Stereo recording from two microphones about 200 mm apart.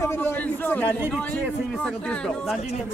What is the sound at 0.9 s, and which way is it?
Speech, 10° right (ahead or behind).